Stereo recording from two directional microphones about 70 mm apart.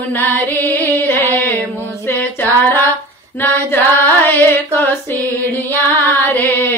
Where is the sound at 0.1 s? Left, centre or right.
Left.